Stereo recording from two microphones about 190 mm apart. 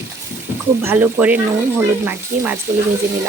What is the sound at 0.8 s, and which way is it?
Speech, 10° right (ahead or behind).